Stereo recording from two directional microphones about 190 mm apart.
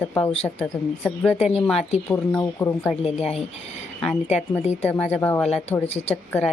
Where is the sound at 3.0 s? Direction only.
30° left (ahead or behind).